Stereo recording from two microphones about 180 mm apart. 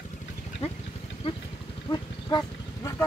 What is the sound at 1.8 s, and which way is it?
Livestock, 20° left (ahead or behind).